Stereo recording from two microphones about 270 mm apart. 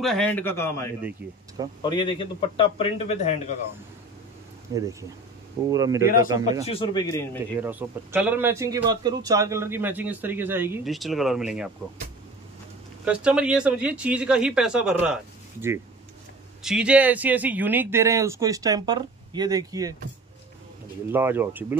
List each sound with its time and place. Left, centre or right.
0.0 s a man's voice: centre; by 3.3 s left
4.7 s a man's voice: centre
6.7 s a man's voice: centre
7.6 s a man's voice: centre
13.0 s speech: centre
16.6 s a man's voice: centre
21.1 s a man's voice: centre